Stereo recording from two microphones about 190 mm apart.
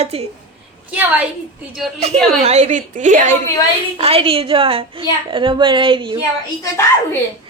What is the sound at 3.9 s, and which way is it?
A woman's voice, 30° right (ahead or behind).